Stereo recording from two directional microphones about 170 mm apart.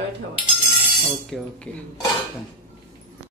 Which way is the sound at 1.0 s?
Centre (ahead or behind).